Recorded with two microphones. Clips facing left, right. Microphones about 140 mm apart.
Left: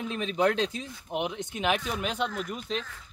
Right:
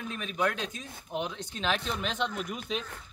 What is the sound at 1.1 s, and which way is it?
Speech, 20° left (ahead or behind).